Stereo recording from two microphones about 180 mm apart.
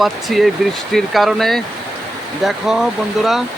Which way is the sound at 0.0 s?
Centre (ahead or behind).